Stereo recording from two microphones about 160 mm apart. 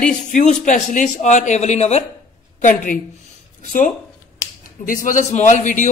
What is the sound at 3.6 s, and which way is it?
A man's voice, 55° left (ahead or behind).